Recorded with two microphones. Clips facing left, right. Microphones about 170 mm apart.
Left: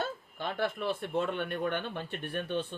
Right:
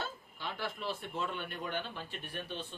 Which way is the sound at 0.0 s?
55° left (ahead or behind).